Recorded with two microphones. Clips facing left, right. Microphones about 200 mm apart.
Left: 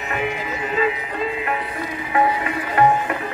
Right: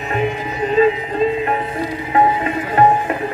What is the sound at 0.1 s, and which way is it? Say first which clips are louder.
Music: right 5 dB; 30° right (ahead or behind).